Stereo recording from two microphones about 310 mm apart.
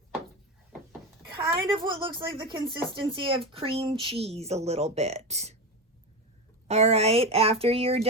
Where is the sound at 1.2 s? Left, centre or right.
Centre.